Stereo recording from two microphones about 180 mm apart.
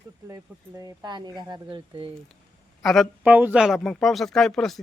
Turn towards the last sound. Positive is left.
turn(degrees=0)  # may be behind; listen again after turning